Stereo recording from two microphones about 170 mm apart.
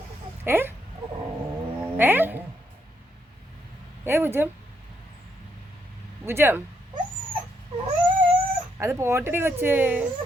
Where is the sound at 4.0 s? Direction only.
15° right (ahead or behind).